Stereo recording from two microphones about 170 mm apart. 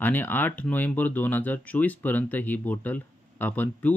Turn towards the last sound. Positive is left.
turn(degrees=10)  # may be behind; listen again after turning